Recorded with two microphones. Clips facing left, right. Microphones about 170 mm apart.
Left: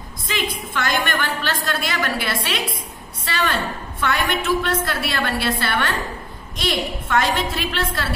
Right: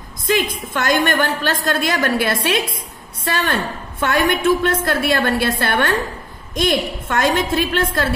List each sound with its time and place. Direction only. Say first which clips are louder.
0.3 s a woman's voice: right 7 dB; 45° right (ahead or behind)